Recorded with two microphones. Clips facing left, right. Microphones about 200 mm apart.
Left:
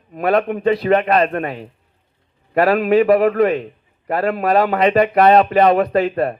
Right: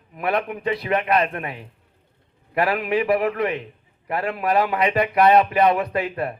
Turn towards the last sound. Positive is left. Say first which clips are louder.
# left 8 dB
turn(degrees=40)  # may be behind; listen again after turning